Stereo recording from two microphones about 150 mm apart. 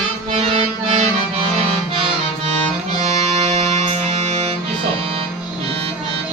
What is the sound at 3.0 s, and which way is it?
Music, 50° right (ahead or behind).